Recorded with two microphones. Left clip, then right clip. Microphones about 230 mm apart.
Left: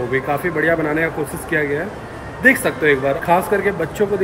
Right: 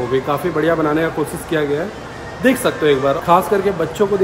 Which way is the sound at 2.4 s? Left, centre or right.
Centre.